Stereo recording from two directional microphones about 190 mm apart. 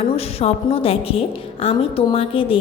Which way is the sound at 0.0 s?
30° left (ahead or behind).